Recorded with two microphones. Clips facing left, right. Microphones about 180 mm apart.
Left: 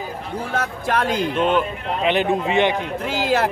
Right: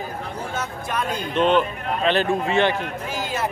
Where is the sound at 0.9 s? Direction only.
70° left (ahead or behind).